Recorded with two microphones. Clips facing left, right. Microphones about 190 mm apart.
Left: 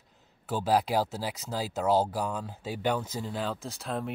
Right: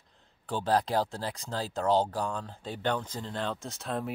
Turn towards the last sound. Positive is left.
turn(degrees=0)  # may be behind; listen again after turning